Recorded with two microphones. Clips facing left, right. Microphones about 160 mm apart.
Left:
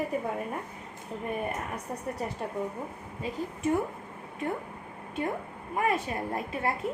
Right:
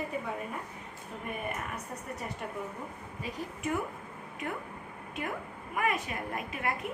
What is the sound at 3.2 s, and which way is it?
Speech, 30° left (ahead or behind).